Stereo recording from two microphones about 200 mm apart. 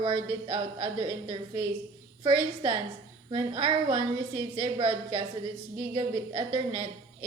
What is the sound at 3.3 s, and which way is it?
A woman's voice, 25° right (ahead or behind).